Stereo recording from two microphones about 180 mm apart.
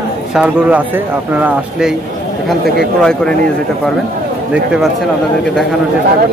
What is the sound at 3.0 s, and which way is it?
Speech, 5° left (ahead or behind).